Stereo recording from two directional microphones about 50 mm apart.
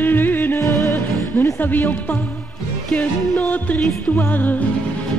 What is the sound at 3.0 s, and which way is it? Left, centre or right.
Music, left.